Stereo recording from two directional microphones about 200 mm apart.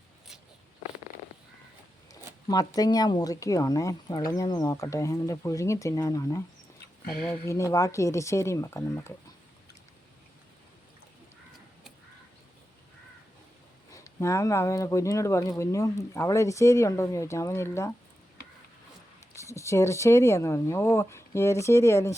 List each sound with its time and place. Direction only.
2.5 s speech: 20° left (ahead or behind)
7.4 s speech: 15° left (ahead or behind)
13.9 s speech: 15° left (ahead or behind)
19.4 s speech: 15° left (ahead or behind)